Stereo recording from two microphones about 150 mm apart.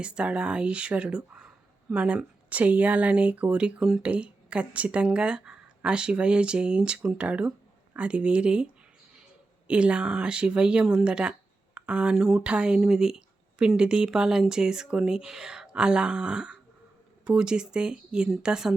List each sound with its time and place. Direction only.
0.0 s speech: 5° right (ahead or behind)